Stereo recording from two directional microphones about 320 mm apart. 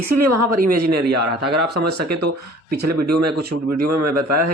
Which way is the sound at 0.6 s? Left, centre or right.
Right.